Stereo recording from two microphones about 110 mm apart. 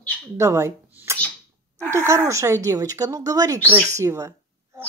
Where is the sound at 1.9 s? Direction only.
25° right (ahead or behind).